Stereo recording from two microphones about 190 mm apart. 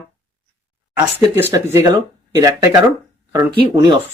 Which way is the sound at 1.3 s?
10° right (ahead or behind).